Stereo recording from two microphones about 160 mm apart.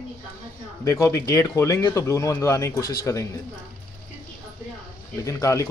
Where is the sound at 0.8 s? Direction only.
20° left (ahead or behind).